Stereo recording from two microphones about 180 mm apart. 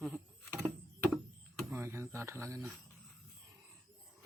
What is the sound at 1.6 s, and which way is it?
Speech, 15° right (ahead or behind).